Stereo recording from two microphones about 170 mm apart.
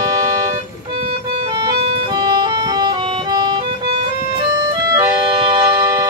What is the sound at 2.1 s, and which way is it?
Music, 25° right (ahead or behind).